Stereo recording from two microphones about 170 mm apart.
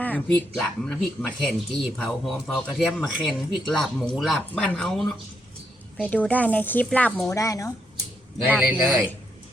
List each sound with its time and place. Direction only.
0.0 s speech: 10° left (ahead or behind)
6.2 s speech: 10° left (ahead or behind)
7.3 s speech: 20° left (ahead or behind)
8.4 s a man's voice: 5° right (ahead or behind)